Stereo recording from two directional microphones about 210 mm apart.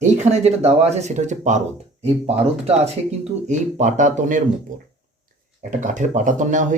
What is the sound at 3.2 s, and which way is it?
Speech, 35° right (ahead or behind).